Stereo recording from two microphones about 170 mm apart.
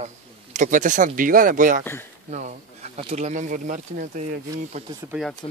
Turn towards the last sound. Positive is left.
turn(degrees=0)  # may be behind; listen again after turning